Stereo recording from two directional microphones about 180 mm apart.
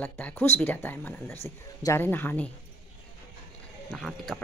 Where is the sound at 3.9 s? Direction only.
Centre (ahead or behind).